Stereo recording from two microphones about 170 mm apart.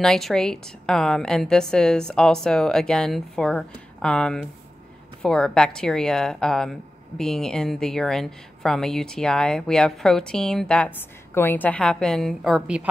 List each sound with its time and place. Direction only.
0.0 s a woman's voice: 5° left (ahead or behind)